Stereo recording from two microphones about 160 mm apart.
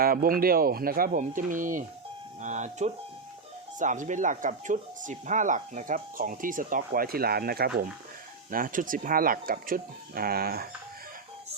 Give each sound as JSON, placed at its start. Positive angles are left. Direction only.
{"t": 0.0, "sound": "speech", "side_deg": -65}
{"t": 8.4, "sound": "speech", "side_deg": -60}